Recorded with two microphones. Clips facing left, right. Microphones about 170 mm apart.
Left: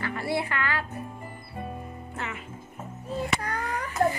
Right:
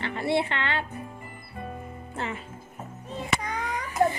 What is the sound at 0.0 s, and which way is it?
Music, 25° right (ahead or behind).